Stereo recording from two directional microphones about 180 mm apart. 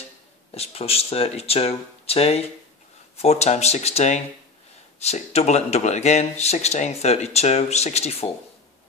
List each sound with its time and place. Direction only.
0.6 s speech: 35° left (ahead or behind)